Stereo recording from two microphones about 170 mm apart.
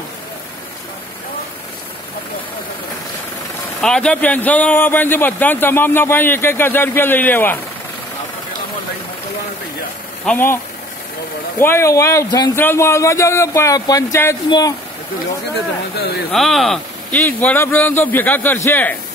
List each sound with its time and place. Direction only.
3.8 s speech: 5° left (ahead or behind)
10.2 s speech: 10° left (ahead or behind)
11.6 s speech: 15° left (ahead or behind)
16.3 s speech: centre (ahead or behind)